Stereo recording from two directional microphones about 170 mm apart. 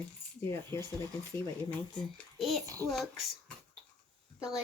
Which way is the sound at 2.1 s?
Centre (ahead or behind).